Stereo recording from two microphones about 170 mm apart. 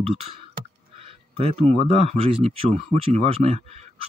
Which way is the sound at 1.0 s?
35° right (ahead or behind).